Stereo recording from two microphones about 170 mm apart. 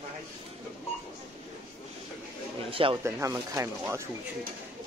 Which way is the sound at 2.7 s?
30° right (ahead or behind).